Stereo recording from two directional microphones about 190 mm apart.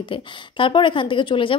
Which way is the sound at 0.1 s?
25° left (ahead or behind).